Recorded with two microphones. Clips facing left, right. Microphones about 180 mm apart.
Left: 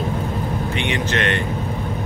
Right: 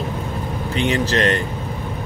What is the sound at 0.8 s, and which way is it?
Speech, 35° right (ahead or behind).